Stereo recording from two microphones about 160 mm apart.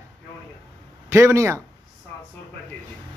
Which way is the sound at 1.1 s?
15° right (ahead or behind).